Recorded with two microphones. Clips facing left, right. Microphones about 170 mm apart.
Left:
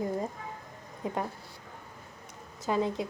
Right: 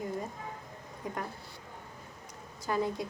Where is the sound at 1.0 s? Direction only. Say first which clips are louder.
Left 5 dB; 25° left (ahead or behind).